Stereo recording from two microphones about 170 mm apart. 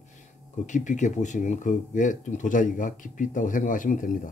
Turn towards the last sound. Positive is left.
turn(degrees=50)  # may be behind; listen again after turning